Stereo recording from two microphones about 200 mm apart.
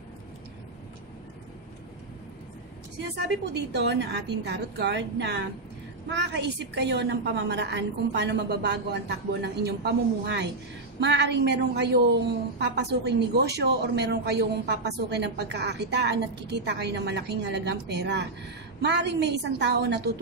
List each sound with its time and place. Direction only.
3.2 s a woman's voice: 55° right (ahead or behind)